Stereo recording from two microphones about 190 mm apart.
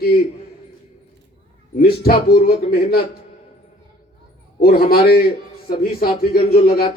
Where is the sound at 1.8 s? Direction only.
55° left (ahead or behind).